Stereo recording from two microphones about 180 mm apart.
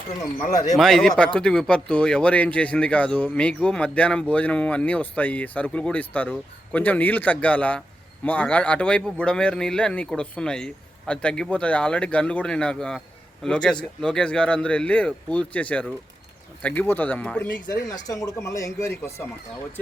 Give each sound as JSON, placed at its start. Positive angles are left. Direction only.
{"t": 0.8, "sound": "speech", "side_deg": 0}
{"t": 17.9, "sound": "speech", "side_deg": 20}